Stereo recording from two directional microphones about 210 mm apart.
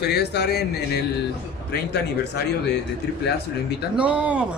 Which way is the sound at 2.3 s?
50° left (ahead or behind).